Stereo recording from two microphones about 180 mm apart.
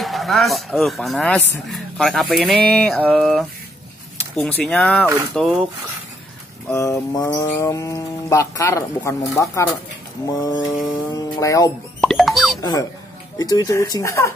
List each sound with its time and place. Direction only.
0.0 s speech: centre (ahead or behind)
6.7 s speech: 15° left (ahead or behind)
12.0 s plop: centre (ahead or behind)
13.4 s speech: 20° left (ahead or behind)